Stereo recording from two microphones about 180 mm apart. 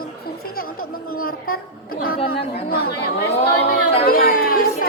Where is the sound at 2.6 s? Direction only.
55° left (ahead or behind).